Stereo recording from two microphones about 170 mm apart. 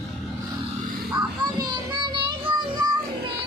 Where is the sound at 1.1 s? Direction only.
25° right (ahead or behind).